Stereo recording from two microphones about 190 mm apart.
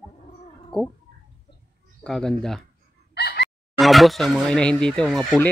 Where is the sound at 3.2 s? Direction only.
60° left (ahead or behind).